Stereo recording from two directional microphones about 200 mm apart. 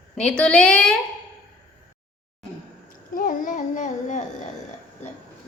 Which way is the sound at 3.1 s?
45° left (ahead or behind).